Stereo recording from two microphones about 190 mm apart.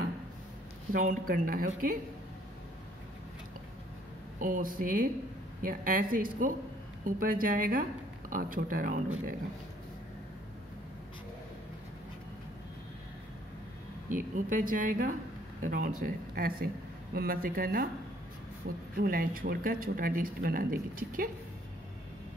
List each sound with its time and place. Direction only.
0.9 s speech: 50° right (ahead or behind)
4.4 s speech: 45° right (ahead or behind)
14.0 s speech: 45° right (ahead or behind)